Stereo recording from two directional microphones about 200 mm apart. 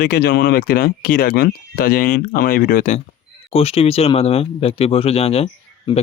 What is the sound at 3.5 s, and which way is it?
Speech, 30° left (ahead or behind).